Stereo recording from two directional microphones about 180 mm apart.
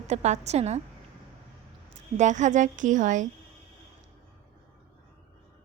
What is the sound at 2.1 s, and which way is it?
A woman's voice, 40° right (ahead or behind).